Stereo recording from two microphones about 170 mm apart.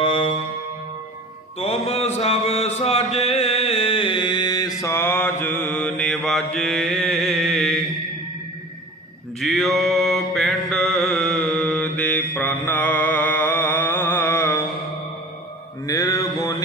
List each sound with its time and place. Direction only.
0.0 s music: 30° left (ahead or behind)
1.6 s a sound: 35° left (ahead or behind); by 7.8 s centre (ahead or behind)
9.4 s mantra: centre (ahead or behind)
15.8 s mantra: 20° left (ahead or behind)